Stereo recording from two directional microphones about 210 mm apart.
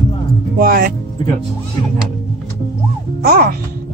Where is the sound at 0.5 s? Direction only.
45° right (ahead or behind).